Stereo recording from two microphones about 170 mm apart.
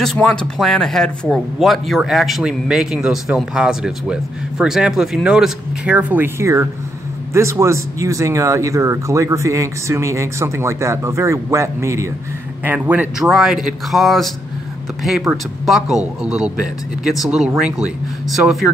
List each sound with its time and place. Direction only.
0.0 s speech: centre (ahead or behind)